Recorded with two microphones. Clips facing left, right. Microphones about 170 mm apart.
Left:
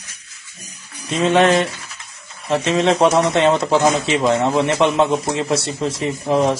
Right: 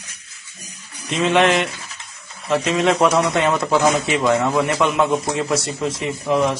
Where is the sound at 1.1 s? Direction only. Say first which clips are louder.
Left 2 dB; 35° left (ahead or behind).